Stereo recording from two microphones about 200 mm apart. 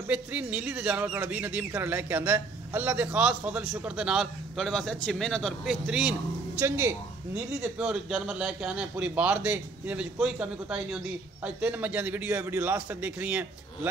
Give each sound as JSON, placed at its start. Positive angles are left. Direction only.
{"t": 0.0, "sound": "a man's voice", "side_deg": -10}